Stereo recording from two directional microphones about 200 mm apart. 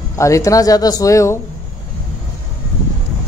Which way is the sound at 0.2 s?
15° left (ahead or behind).